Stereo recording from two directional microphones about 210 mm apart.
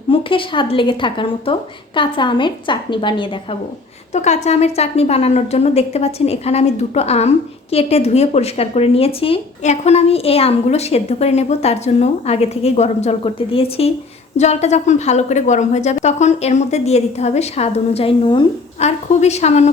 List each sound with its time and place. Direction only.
0.1 s a woman's voice: 25° left (ahead or behind)
4.1 s a woman's voice: 35° left (ahead or behind)